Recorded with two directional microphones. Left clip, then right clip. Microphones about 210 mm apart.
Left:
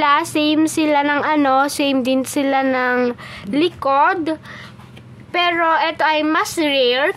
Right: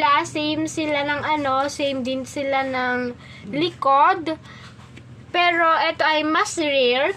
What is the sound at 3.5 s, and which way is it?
A woman's voice, 20° left (ahead or behind).